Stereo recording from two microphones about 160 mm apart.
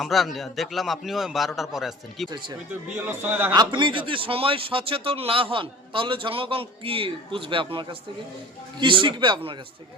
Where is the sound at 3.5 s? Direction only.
30° right (ahead or behind).